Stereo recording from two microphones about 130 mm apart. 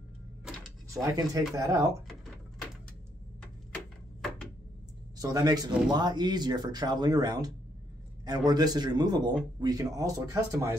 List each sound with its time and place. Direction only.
1.0 s speech: 25° right (ahead or behind)
5.2 s speech: 30° right (ahead or behind)